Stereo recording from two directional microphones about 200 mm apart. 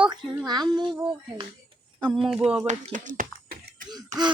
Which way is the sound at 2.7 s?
40° right (ahead or behind).